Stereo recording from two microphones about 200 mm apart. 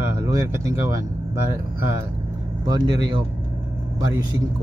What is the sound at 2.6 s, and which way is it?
Speech, 20° right (ahead or behind).